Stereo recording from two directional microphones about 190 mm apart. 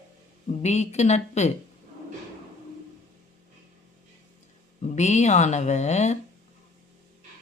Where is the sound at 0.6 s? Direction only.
35° left (ahead or behind).